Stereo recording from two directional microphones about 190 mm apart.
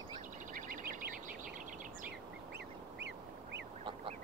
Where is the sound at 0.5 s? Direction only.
45° right (ahead or behind).